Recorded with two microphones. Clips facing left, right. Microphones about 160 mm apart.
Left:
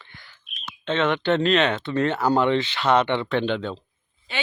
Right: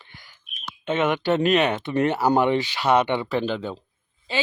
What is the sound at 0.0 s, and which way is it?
Speech, 15° right (ahead or behind).